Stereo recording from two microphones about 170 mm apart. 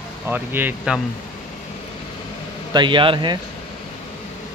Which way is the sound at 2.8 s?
30° right (ahead or behind).